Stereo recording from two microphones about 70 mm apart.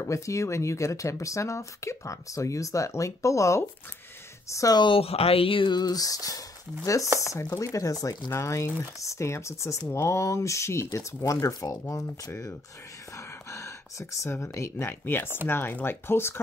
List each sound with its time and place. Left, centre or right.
0.0 s speech: left
5.7 s speech: left
8.3 s speech: left
13.1 s a sound: left
14.3 s speech: left